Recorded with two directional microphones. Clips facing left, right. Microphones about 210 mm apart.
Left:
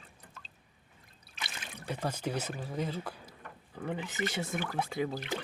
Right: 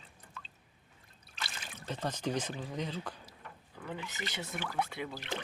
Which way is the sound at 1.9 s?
10° left (ahead or behind).